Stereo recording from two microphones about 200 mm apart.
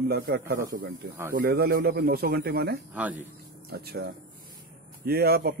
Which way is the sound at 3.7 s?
50° right (ahead or behind).